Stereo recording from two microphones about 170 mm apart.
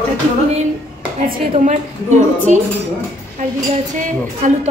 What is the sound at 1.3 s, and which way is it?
Speech, 45° right (ahead or behind).